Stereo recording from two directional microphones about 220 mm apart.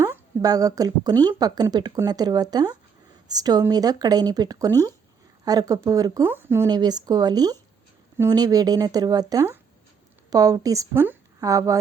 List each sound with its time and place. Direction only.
0.0 s a woman's voice: 15° right (ahead or behind)